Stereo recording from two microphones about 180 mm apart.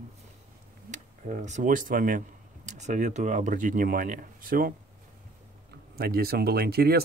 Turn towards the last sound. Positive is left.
turn(degrees=-60)  # may be behind; listen again after turning